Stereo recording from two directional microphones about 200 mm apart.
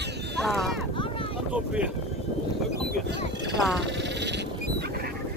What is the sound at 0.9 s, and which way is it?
Vehicle, 25° left (ahead or behind).